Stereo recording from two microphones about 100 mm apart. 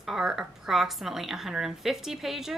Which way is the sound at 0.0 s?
5° right (ahead or behind).